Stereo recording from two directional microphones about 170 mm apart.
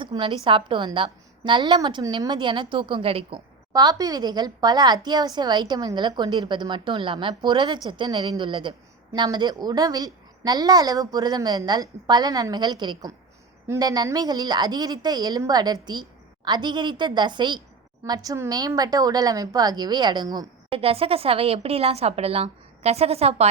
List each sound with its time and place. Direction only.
0.0 s a woman's voice: 30° right (ahead or behind)